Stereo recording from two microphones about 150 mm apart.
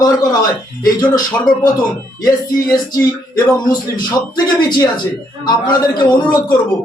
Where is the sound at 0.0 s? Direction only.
25° left (ahead or behind).